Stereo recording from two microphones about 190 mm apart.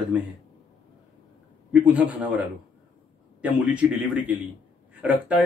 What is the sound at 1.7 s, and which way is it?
Speech, 5° right (ahead or behind).